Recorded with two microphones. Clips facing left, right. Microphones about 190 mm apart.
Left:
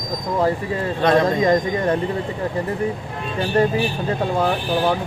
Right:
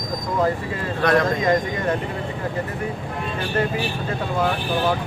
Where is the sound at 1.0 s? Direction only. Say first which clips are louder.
Left 2 dB; 20° left (ahead or behind).